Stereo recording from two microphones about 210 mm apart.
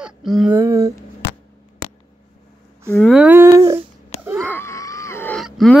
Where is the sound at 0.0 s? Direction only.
Centre (ahead or behind).